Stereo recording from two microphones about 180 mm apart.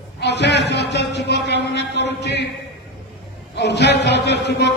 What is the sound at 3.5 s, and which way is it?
A man's voice, 70° left (ahead or behind).